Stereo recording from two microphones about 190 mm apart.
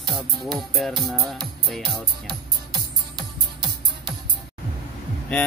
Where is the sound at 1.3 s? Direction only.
Centre (ahead or behind).